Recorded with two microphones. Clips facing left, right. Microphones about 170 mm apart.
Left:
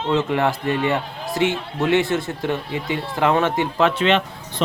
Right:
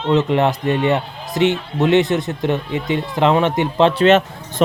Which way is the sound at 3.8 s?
40° right (ahead or behind).